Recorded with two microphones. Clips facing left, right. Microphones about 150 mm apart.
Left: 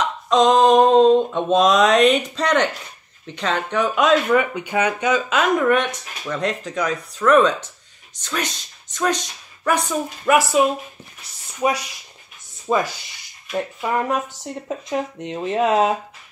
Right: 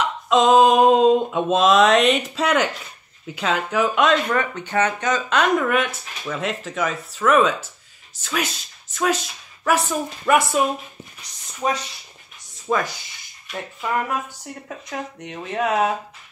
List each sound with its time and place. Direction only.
0.0 s a sound: 5° right (ahead or behind)
3.3 s speech: 5° right (ahead or behind)
11.6 s speech: 10° left (ahead or behind)